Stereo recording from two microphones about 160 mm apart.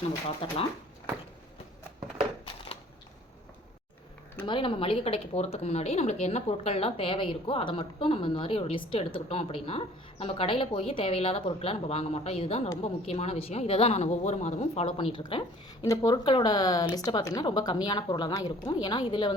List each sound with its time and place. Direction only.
0.4 s speech: 35° left (ahead or behind)
4.4 s a woman's voice: 30° left (ahead or behind)